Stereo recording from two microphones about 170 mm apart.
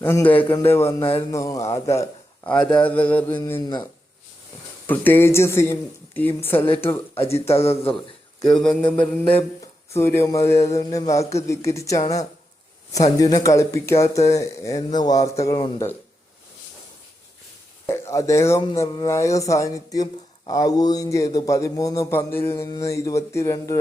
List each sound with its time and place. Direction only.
0.0 s a man's voice: 15° left (ahead or behind)
3.6 s speech: 25° left (ahead or behind)
4.9 s a man's voice: 10° left (ahead or behind)
13.1 s speech: 20° left (ahead or behind)
17.8 s a man's voice: 15° left (ahead or behind)